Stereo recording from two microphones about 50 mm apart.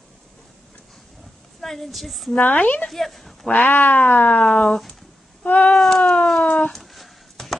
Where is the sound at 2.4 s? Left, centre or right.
Left.